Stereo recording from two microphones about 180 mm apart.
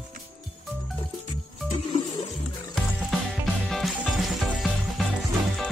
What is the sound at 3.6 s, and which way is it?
Music, centre (ahead or behind).